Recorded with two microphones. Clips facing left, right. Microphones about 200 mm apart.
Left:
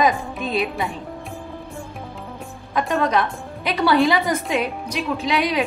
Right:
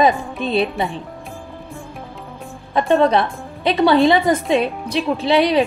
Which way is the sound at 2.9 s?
30° right (ahead or behind).